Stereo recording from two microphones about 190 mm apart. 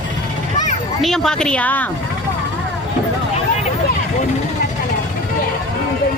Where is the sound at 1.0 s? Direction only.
Centre (ahead or behind).